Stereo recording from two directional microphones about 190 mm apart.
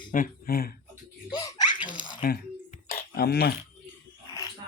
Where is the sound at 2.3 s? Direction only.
50° left (ahead or behind).